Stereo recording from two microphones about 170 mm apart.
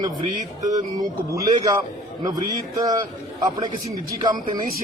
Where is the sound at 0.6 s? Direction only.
20° right (ahead or behind).